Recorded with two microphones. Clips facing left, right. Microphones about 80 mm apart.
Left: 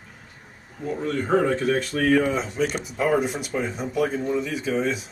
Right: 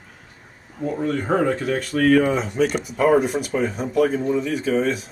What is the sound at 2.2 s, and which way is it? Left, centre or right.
Speech, centre.